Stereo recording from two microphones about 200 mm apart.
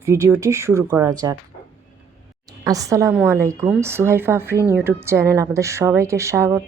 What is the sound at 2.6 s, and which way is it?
A woman's voice, 15° right (ahead or behind).